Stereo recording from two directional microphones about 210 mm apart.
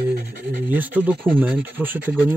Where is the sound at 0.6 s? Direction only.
10° right (ahead or behind).